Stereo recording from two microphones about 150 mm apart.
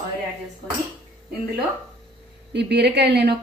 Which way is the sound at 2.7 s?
90° right.